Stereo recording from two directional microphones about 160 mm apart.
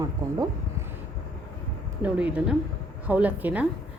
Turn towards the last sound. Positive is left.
turn(degrees=-10)  # may be behind; listen again after turning